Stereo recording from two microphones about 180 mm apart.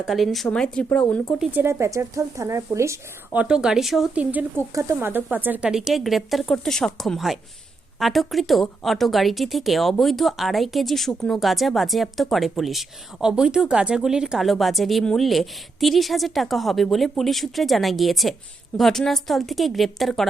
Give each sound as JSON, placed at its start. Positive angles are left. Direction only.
{"t": 0.0, "sound": "a woman's voice", "side_deg": 0}
{"t": 1.5, "sound": "speech", "side_deg": -15}
{"t": 3.4, "sound": "a woman's voice", "side_deg": -5}